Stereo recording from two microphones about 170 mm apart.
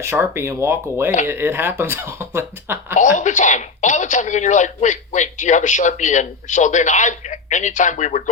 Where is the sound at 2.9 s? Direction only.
45° left (ahead or behind).